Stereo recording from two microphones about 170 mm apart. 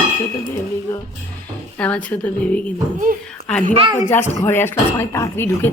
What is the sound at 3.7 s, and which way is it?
Speech, 30° right (ahead or behind).